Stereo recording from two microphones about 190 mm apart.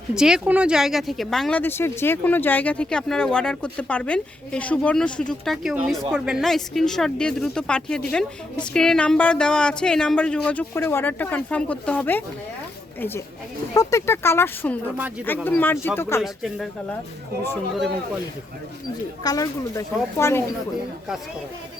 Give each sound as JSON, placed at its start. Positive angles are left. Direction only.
{"t": 0.1, "sound": "speech", "side_deg": -5}
{"t": 16.2, "sound": "speech", "side_deg": 0}
{"t": 19.2, "sound": "speech", "side_deg": 20}